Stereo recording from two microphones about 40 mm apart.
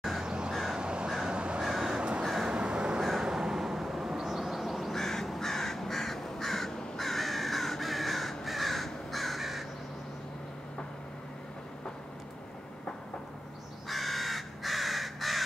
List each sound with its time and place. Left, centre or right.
0.2 s a sound: right
0.7 s crow: right
1.6 s crow: centre
2.0 s crow: right
3.0 s a sound: centre
4.9 s crow: centre
13.8 s crow: centre